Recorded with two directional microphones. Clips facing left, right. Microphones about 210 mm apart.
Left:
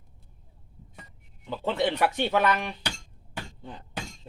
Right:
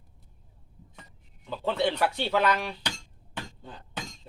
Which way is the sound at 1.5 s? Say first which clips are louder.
Left 1 dB; 15° left (ahead or behind).